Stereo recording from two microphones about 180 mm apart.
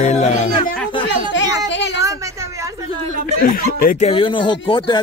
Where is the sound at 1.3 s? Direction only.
90° left.